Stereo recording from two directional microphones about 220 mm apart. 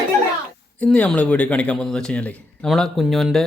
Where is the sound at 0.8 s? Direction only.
5° left (ahead or behind).